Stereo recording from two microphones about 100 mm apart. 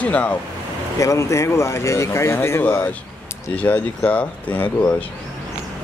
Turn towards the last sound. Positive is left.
turn(degrees=15)  # may be behind; listen again after turning